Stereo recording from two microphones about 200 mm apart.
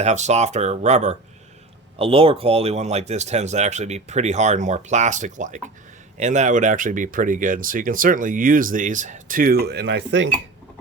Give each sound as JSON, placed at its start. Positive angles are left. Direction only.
{"t": 0.0, "sound": "speech", "side_deg": -35}